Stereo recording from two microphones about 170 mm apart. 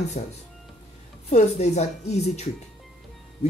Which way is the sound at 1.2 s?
40° left (ahead or behind).